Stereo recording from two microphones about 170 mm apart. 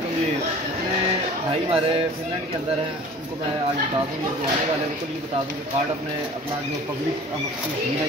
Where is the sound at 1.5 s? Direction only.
35° right (ahead or behind).